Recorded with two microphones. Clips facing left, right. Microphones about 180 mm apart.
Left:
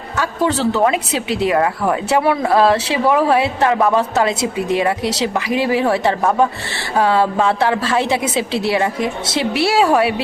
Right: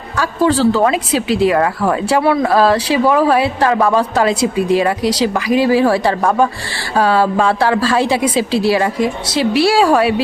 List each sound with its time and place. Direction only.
0.2 s a woman's voice: 25° left (ahead or behind)